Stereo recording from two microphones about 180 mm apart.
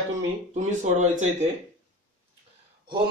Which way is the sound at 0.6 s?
40° right (ahead or behind).